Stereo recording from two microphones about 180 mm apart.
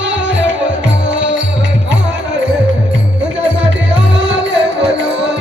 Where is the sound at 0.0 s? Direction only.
90° right.